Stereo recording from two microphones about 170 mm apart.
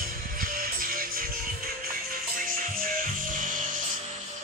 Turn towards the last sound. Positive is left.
turn(degrees=-50)  # may be behind; listen again after turning